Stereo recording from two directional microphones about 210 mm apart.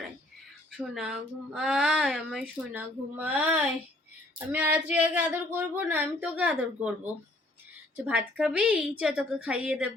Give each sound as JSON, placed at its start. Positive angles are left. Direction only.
{"t": 0.8, "sound": "speech", "side_deg": -5}
{"t": 8.4, "sound": "speech", "side_deg": -5}